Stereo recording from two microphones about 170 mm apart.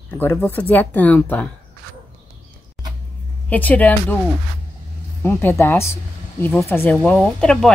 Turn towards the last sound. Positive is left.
turn(degrees=5)  # may be behind; listen again after turning